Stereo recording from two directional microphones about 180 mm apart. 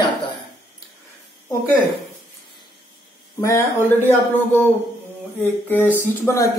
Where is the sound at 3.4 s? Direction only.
15° left (ahead or behind).